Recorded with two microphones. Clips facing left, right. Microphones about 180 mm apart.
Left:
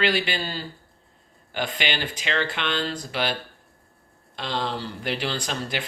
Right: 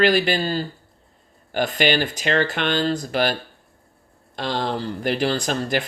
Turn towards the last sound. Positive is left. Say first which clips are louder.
# right 7 dB
turn(degrees=-45)  # may be behind; listen again after turning